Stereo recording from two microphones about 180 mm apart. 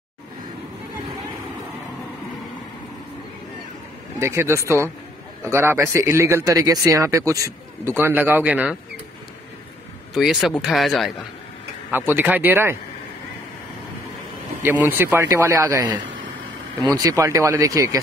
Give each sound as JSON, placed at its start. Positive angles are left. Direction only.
{"t": 4.2, "sound": "speech", "side_deg": -15}
{"t": 10.1, "sound": "speech", "side_deg": 0}
{"t": 11.9, "sound": "speech", "side_deg": -10}
{"t": 14.6, "sound": "speech", "side_deg": -10}